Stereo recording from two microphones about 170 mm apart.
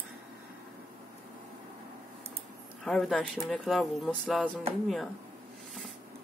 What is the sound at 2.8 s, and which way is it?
Speech, centre (ahead or behind).